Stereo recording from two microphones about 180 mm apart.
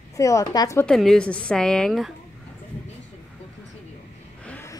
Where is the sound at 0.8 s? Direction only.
Centre (ahead or behind).